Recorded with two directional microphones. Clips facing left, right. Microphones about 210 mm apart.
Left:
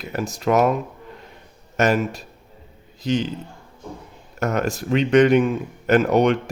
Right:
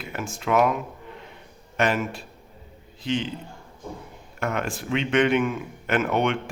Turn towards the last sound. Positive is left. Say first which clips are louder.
# left 6 dB
turn(degrees=40)  # may be behind; listen again after turning